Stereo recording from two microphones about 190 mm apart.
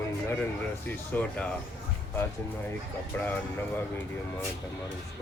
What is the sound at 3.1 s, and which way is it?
Speech, 10° left (ahead or behind).